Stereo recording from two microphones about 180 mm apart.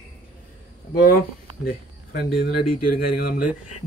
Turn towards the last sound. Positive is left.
turn(degrees=55)  # may be behind; listen again after turning